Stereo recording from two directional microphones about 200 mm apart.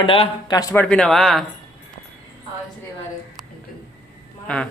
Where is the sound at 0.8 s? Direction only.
5° left (ahead or behind).